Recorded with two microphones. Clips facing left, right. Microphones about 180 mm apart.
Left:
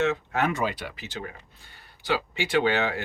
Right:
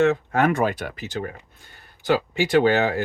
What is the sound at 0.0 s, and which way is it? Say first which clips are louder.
Speech: right 6 dB; 50° right (ahead or behind).